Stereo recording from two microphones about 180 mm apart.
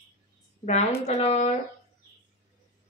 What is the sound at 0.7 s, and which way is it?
Speech, 35° left (ahead or behind).